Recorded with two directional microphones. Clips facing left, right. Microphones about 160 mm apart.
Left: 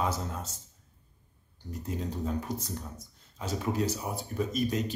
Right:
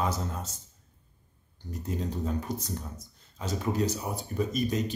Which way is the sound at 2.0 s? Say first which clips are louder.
Right 1 dB; 5° left (ahead or behind).